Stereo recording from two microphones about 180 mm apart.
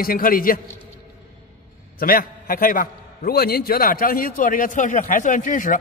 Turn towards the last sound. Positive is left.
turn(degrees=45)  # may be behind; listen again after turning